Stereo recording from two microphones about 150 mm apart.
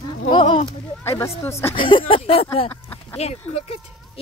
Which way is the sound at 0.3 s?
35° left (ahead or behind).